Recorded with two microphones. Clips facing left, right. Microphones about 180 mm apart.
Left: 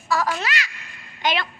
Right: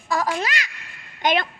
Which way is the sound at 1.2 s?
50° right (ahead or behind).